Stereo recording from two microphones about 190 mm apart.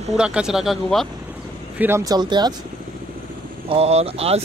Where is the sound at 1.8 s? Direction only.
15° right (ahead or behind).